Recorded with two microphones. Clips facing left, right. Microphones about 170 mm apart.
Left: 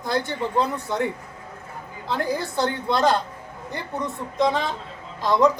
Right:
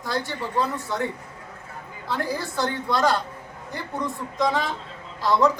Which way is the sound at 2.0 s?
20° left (ahead or behind).